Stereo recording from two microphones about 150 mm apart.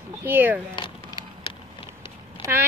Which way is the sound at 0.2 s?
15° right (ahead or behind).